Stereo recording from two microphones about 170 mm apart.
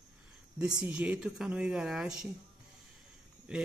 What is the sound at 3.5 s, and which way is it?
Speech, 5° right (ahead or behind).